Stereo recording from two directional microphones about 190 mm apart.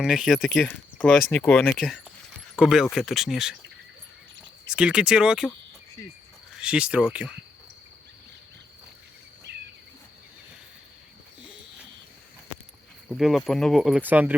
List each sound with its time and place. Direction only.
0.0 s speech: centre (ahead or behind)
4.6 s speech: 5° right (ahead or behind)
6.0 s speech: 15° left (ahead or behind)
6.5 s speech: 5° right (ahead or behind)
9.5 s cricket: 65° right (ahead or behind)
13.1 s speech: centre (ahead or behind)